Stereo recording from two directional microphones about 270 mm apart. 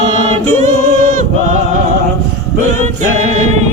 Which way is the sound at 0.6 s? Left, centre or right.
Right.